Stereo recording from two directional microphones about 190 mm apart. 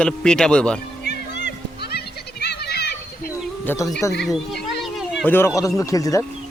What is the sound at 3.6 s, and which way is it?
Speech, 15° left (ahead or behind).